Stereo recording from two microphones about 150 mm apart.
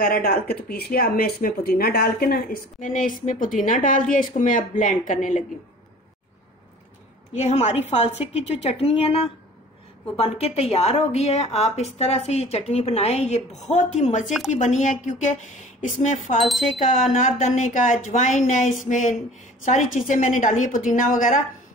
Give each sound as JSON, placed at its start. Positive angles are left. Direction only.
{"t": 0.0, "sound": "speech", "side_deg": 85}
{"t": 7.3, "sound": "a woman's voice", "side_deg": 50}
{"t": 16.3, "sound": "speech", "side_deg": 0}
{"t": 17.2, "sound": "speech", "side_deg": 55}